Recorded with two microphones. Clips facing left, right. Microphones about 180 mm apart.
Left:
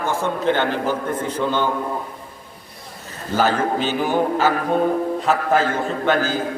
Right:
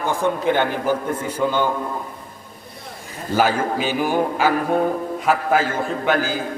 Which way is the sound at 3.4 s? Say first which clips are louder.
Even; 10° right (ahead or behind).